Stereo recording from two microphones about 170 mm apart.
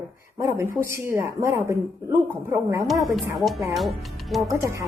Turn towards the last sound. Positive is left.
turn(degrees=-20)  # may be behind; listen again after turning